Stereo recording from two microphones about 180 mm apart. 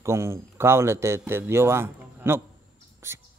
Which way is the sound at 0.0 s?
15° right (ahead or behind).